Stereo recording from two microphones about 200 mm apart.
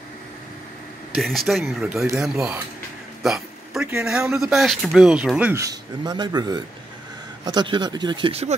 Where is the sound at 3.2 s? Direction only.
Centre (ahead or behind).